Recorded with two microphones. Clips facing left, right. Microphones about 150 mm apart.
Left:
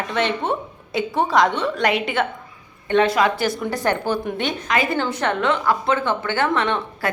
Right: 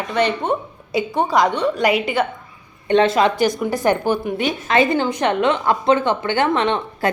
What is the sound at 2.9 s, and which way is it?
A woman's voice, 25° right (ahead or behind).